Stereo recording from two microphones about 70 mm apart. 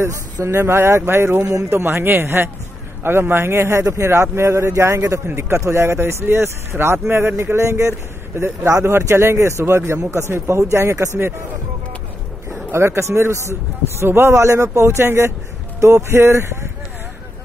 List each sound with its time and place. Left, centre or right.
0.0 s a man's voice: right
8.9 s a man's voice: right
12.7 s a man's voice: right